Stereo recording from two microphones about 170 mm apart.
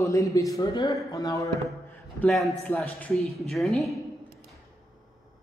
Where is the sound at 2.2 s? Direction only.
Centre (ahead or behind).